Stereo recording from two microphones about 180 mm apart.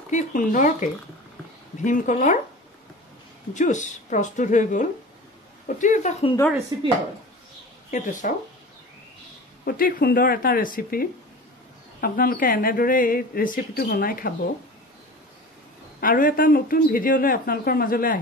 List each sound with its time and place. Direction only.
0.1 s speech: 45° left (ahead or behind)
3.5 s speech: 45° left (ahead or behind)
6.7 s speech: 20° right (ahead or behind)
7.9 s speech: 45° left (ahead or behind)
9.7 s speech: 55° left (ahead or behind)
16.0 s speech: 50° left (ahead or behind)